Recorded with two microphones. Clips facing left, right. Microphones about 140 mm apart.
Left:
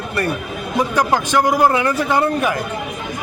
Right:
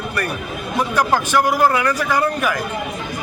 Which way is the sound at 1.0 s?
15° left (ahead or behind).